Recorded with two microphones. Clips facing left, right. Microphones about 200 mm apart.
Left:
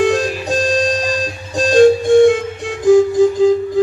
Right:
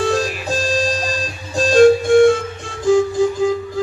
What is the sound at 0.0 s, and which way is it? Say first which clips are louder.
Music: left 4 dB; 15° left (ahead or behind).